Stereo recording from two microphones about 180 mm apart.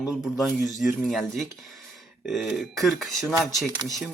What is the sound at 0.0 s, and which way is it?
A man's voice, 5° right (ahead or behind).